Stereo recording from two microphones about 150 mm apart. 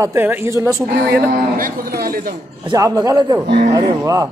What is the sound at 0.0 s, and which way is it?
Speech, 15° right (ahead or behind).